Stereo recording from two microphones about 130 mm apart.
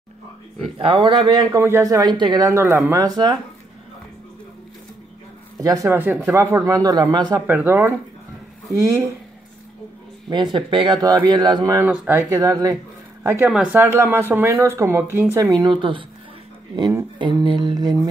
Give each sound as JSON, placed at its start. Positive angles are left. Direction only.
{"t": 0.7, "sound": "speech", "side_deg": -40}
{"t": 1.6, "sound": "speech", "side_deg": -20}
{"t": 2.5, "sound": "speech", "side_deg": -15}
{"t": 3.1, "sound": "speech", "side_deg": -35}
{"t": 5.6, "sound": "speech", "side_deg": -25}
{"t": 7.4, "sound": "speech", "side_deg": -15}
{"t": 10.3, "sound": "speech", "side_deg": -35}
{"t": 11.8, "sound": "speech", "side_deg": -10}
{"t": 12.2, "sound": "speech", "side_deg": -25}
{"t": 13.5, "sound": "speech", "side_deg": -10}
{"t": 15.6, "sound": "speech", "side_deg": -40}
{"t": 17.2, "sound": "speech", "side_deg": -40}